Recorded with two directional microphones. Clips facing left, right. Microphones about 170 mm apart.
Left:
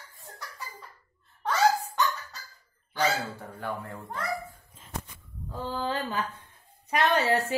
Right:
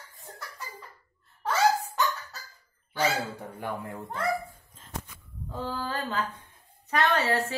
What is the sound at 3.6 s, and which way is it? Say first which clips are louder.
Speech: even; 15° right (ahead or behind).